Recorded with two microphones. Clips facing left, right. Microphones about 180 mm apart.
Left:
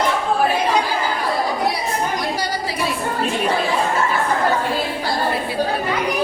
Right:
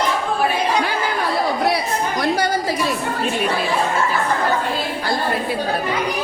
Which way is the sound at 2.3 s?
50° right (ahead or behind).